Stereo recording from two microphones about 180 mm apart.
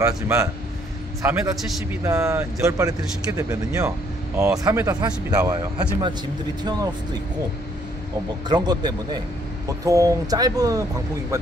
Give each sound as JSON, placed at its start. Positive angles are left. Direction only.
{"t": 0.0, "sound": "speech", "side_deg": -15}
{"t": 8.5, "sound": "speech", "side_deg": -25}